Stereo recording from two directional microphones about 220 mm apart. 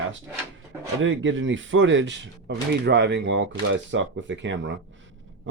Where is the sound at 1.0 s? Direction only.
60° right (ahead or behind).